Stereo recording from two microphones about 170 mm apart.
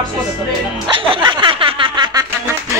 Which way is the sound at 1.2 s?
30° right (ahead or behind).